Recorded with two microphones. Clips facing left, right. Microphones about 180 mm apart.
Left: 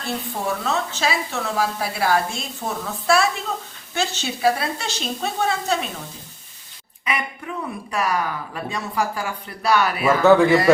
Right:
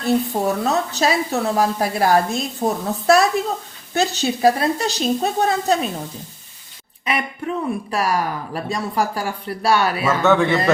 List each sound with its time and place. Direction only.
0.0 s a woman's voice: 40° right (ahead or behind)
7.0 s a woman's voice: 35° right (ahead or behind)
10.2 s a man's voice: 5° left (ahead or behind)